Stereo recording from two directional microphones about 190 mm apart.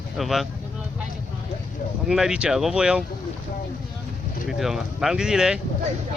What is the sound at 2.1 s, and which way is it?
Speech, 5° right (ahead or behind).